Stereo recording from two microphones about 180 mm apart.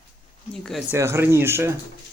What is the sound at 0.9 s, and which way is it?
Speech, 15° right (ahead or behind).